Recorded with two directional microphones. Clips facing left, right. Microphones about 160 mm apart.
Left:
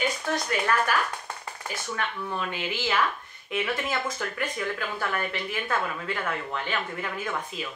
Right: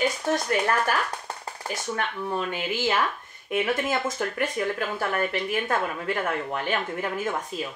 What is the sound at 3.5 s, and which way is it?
Speech, 45° right (ahead or behind).